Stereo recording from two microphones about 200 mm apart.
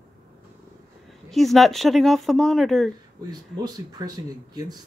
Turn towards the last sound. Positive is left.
turn(degrees=-20)  # may be behind; listen again after turning